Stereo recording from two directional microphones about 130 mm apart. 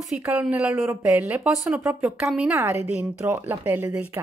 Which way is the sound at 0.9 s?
20° right (ahead or behind).